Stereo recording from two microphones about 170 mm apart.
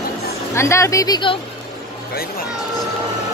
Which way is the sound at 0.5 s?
15° left (ahead or behind).